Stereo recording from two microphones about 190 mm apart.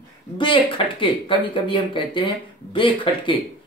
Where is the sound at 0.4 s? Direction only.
25° left (ahead or behind).